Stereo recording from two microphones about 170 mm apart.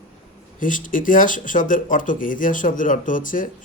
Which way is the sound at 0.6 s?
50° left (ahead or behind).